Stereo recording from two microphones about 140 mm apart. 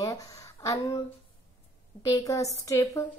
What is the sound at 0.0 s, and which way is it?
Speech, 25° left (ahead or behind).